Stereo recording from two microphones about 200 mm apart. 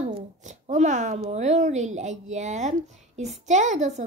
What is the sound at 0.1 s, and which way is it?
A woman's voice, 35° right (ahead or behind).